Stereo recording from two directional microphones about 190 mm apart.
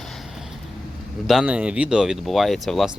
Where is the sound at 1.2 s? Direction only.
5° right (ahead or behind).